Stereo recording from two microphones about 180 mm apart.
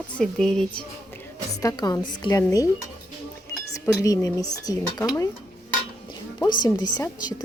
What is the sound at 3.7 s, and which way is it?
Speech, 20° left (ahead or behind).